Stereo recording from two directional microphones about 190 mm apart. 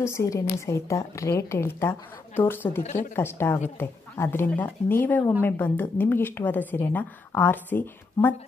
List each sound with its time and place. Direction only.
0.0 s speech: 15° left (ahead or behind)
2.8 s a woman's voice: 35° left (ahead or behind)
3.2 s speech: 15° left (ahead or behind)